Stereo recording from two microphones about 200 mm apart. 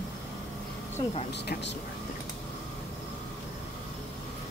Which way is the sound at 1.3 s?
60° left (ahead or behind).